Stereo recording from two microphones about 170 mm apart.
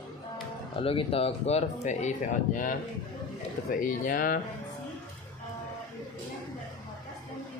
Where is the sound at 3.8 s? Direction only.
55° left (ahead or behind).